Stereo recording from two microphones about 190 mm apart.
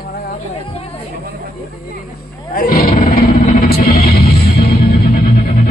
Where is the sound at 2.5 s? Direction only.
50° left (ahead or behind).